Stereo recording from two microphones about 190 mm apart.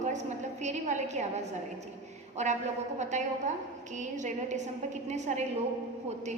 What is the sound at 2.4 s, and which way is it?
A woman's voice, 35° right (ahead or behind).